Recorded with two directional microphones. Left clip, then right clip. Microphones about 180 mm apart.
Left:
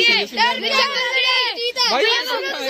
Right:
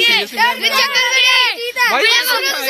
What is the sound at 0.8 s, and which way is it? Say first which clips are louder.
Speech: right 5 dB; 25° left (ahead or behind).